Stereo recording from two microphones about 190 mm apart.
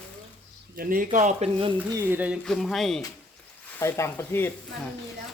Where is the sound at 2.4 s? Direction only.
Centre (ahead or behind).